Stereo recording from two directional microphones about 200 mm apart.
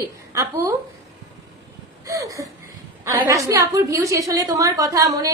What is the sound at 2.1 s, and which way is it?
A woman's voice, 15° right (ahead or behind).